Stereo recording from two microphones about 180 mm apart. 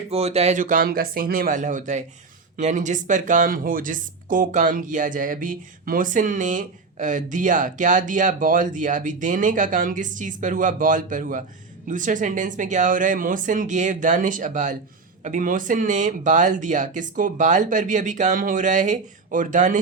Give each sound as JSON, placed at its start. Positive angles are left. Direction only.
{"t": 0.1, "sound": "speech", "side_deg": -35}